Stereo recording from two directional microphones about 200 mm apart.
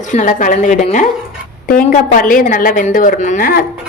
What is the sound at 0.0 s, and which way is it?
A woman's voice, 40° left (ahead or behind).